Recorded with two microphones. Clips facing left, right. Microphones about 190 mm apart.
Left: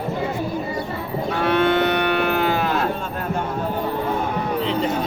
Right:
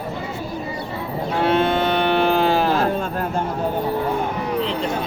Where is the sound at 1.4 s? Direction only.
25° right (ahead or behind).